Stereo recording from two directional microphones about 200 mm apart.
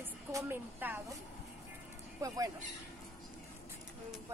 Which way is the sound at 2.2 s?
15° right (ahead or behind).